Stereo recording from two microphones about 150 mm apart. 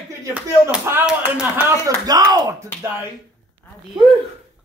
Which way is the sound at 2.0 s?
25° right (ahead or behind).